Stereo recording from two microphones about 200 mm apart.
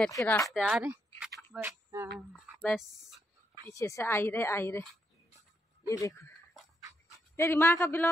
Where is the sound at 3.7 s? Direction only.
15° left (ahead or behind).